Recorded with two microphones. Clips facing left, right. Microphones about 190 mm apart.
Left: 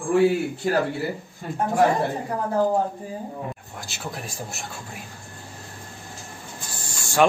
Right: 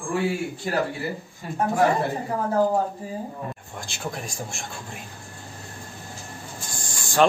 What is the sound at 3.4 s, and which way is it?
A man's voice, 5° left (ahead or behind).